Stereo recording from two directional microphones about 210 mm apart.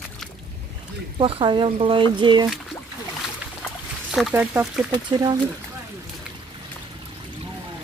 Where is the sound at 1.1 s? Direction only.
25° right (ahead or behind).